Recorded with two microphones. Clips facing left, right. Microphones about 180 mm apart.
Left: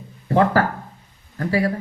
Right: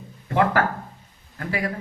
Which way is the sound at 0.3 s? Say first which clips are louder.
Left 3 dB; 35° left (ahead or behind).